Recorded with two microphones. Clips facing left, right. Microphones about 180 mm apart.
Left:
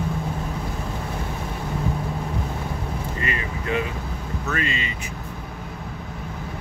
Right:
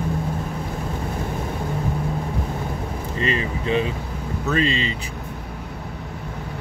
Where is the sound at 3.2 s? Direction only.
25° right (ahead or behind).